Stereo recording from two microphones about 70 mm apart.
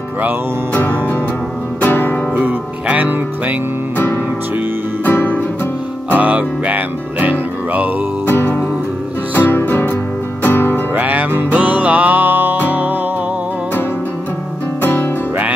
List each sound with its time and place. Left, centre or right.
1.8 s music: left
2.3 s music: right
5.0 s music: left
6.1 s music: right
8.3 s music: left
11.0 s music: right
14.8 s music: left